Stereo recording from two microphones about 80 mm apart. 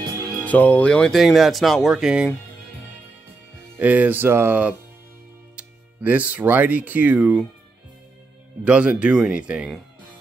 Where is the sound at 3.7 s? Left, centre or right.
Centre.